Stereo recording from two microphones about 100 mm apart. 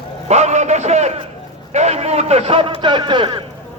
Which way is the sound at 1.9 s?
90° right.